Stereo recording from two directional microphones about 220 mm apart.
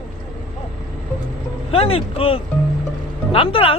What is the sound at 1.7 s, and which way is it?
Speech, 25° left (ahead or behind).